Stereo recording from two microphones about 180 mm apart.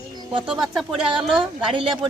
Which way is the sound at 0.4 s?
5° right (ahead or behind).